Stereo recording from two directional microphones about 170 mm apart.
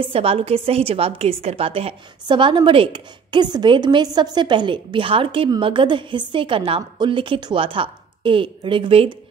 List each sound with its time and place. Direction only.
0.0 s a woman's voice: 35° right (ahead or behind)